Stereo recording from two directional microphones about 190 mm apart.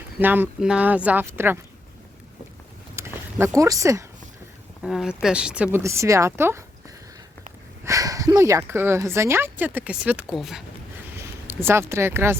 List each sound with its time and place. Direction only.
0.2 s speech: 10° right (ahead or behind)
2.9 s a sound: 15° right (ahead or behind)
4.8 s speech: 5° right (ahead or behind)
7.9 s speech: 15° right (ahead or behind); by 10.6 s centre (ahead or behind)
11.4 s speech: 10° right (ahead or behind)